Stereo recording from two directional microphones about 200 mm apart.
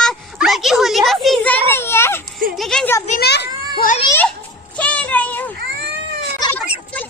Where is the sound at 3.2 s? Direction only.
55° left (ahead or behind).